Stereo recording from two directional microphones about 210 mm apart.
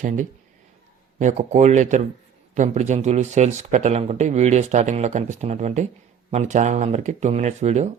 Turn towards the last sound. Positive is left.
turn(degrees=-35)  # may be behind; listen again after turning